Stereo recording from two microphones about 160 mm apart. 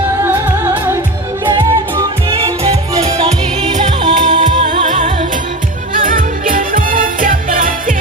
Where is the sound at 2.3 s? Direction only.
35° right (ahead or behind).